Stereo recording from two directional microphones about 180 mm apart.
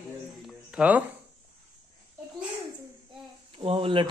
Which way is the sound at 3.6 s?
30° right (ahead or behind).